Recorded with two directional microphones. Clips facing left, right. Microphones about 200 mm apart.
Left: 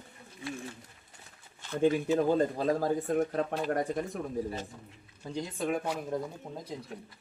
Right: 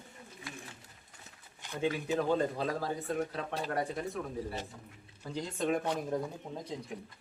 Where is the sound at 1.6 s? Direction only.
15° right (ahead or behind).